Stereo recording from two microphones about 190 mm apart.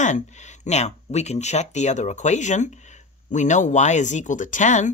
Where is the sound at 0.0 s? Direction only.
40° left (ahead or behind).